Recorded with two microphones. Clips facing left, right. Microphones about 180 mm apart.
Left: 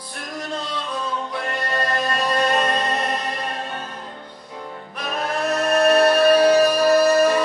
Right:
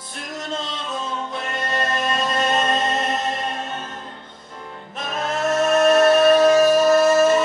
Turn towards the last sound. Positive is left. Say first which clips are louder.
# right 1 dB
turn(degrees=-25)  # may be behind; listen again after turning